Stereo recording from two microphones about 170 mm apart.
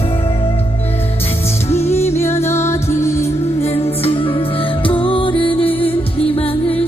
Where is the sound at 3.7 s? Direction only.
35° left (ahead or behind).